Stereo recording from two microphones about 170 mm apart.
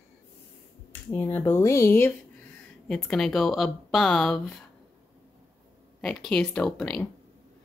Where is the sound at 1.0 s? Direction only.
15° left (ahead or behind).